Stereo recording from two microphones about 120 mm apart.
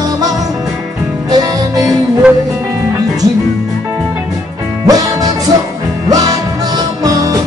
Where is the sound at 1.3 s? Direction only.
30° right (ahead or behind).